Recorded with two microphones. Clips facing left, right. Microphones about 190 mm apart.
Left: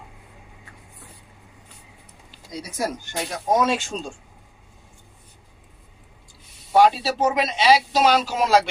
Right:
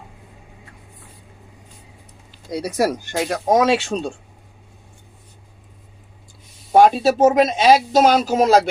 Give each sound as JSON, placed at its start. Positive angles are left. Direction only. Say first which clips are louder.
{"t": 2.5, "sound": "speech", "louder": "right 8 dB", "side_deg": -65}
{"t": 6.7, "sound": "speech", "louder": "right 4 dB", "side_deg": -50}